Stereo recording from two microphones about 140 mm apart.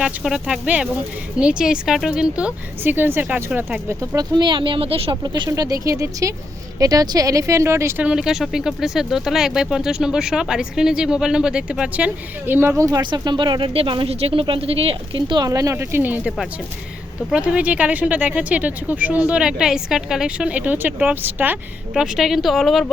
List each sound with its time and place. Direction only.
0.0 s speech: 5° right (ahead or behind); by 5.1 s 40° right (ahead or behind)
5.2 s speech: 30° right (ahead or behind)
8.0 s speech: 5° right (ahead or behind)
17.3 s speech: 10° right (ahead or behind)